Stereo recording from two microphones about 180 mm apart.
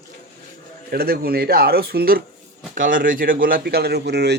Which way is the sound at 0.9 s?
60° right (ahead or behind).